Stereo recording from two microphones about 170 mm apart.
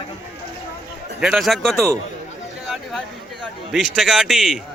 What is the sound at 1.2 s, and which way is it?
Speech, centre (ahead or behind).